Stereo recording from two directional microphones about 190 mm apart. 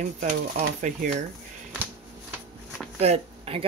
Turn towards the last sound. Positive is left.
turn(degrees=-30)  # may be behind; listen again after turning